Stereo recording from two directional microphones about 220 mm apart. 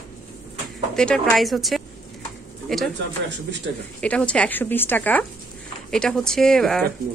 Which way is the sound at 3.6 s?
50° right (ahead or behind).